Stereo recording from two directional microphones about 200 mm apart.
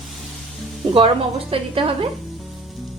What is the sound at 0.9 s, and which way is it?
A woman's voice, 25° right (ahead or behind).